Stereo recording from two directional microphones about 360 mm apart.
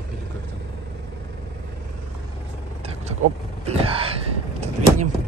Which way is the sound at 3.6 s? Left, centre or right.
Centre.